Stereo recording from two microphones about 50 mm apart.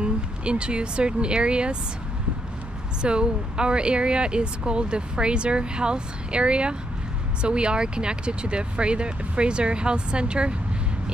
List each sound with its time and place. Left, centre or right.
0.0 s speech: right
3.0 s speech: centre